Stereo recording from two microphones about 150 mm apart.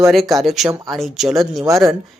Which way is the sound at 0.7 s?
25° right (ahead or behind).